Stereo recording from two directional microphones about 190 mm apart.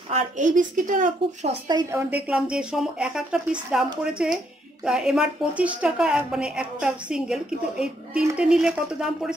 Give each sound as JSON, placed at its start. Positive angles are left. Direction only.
{"t": 0.1, "sound": "speech", "side_deg": -40}
{"t": 1.7, "sound": "a woman's voice", "side_deg": -15}